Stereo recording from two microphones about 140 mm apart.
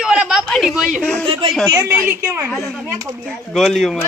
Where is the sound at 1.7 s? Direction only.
20° right (ahead or behind).